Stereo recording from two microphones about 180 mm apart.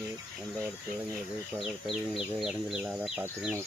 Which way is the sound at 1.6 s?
Centre (ahead or behind).